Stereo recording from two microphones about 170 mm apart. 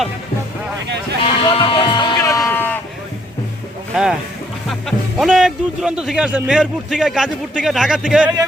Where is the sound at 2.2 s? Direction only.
15° left (ahead or behind).